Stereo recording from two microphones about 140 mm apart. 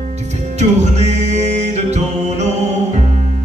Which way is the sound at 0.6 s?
55° right (ahead or behind).